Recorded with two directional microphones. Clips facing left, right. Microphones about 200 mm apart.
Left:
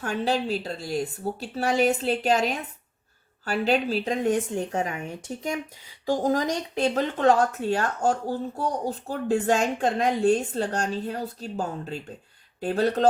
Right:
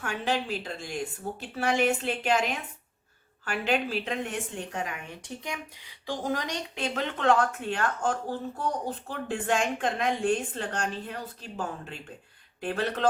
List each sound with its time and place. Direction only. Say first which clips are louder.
0.0 s a woman's voice: left 4 dB; 35° left (ahead or behind)